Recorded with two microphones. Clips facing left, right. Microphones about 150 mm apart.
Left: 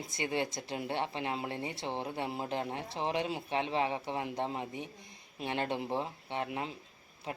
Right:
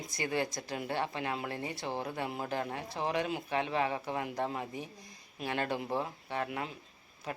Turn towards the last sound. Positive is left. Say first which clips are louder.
# even
turn(degrees=20)  # may be behind; listen again after turning